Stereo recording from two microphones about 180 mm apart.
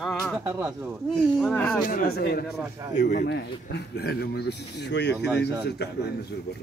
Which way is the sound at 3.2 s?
65° left (ahead or behind).